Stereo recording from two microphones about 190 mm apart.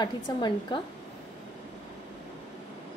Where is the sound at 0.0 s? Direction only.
25° left (ahead or behind).